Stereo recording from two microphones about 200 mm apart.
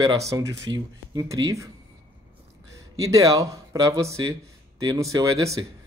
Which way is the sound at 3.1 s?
15° right (ahead or behind).